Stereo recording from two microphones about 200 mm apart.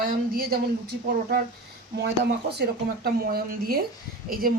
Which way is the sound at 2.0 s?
55° right (ahead or behind).